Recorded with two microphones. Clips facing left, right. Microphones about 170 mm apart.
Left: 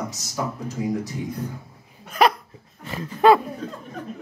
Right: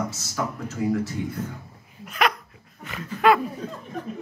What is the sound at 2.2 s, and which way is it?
Hiccup, 35° left (ahead or behind).